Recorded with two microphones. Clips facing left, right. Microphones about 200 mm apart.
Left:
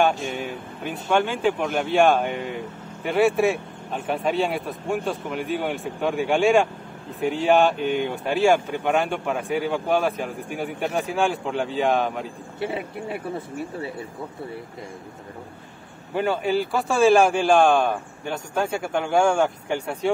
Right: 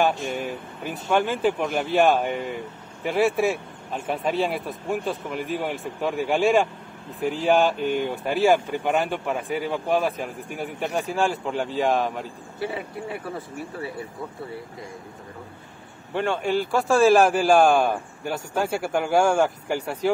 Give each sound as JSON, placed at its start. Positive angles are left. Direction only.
{"t": 0.0, "sound": "speech", "side_deg": 0}
{"t": 12.5, "sound": "speech", "side_deg": 25}
{"t": 16.2, "sound": "speech", "side_deg": 5}